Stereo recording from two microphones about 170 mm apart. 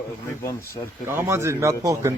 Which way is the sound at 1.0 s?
15° right (ahead or behind).